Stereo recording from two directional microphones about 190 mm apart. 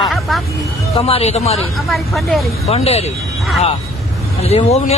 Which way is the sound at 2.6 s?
30° left (ahead or behind).